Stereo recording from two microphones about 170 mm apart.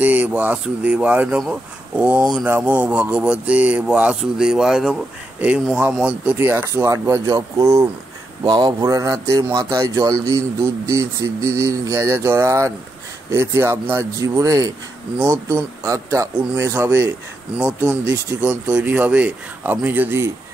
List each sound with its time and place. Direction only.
0.0 s speech: 10° right (ahead or behind)
18.1 s speech: 15° right (ahead or behind)